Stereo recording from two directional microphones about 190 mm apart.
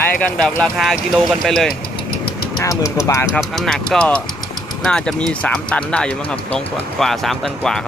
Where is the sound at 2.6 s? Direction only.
15° left (ahead or behind).